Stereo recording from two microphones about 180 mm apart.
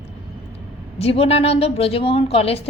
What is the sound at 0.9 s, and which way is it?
A woman's voice, 35° left (ahead or behind).